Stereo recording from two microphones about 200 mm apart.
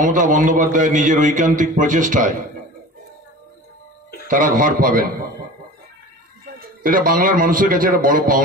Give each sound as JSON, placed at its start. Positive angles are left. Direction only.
{"t": 0.0, "sound": "a man's voice", "side_deg": -40}
{"t": 4.3, "sound": "a man's voice", "side_deg": -45}
{"t": 6.6, "sound": "a man's voice", "side_deg": -45}